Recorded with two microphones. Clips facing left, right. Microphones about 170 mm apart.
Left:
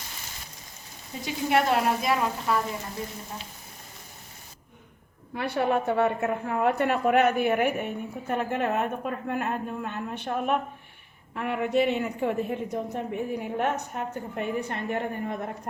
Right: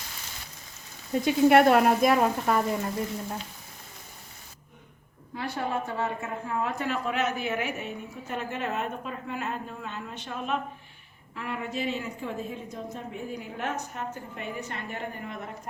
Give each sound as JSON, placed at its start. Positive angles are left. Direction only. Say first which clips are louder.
{"t": 1.2, "sound": "speech", "louder": "right 6 dB", "side_deg": -55}
{"t": 5.4, "sound": "a woman's voice", "louder": "left 5 dB", "side_deg": 65}